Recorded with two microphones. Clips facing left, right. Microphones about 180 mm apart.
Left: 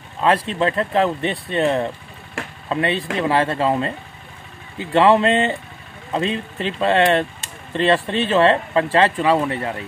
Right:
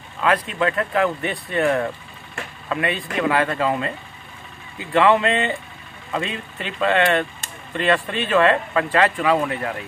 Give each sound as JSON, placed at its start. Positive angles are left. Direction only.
{"t": 0.2, "sound": "speech", "side_deg": 30}